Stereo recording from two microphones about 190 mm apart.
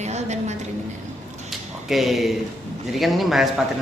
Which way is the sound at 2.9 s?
Centre (ahead or behind).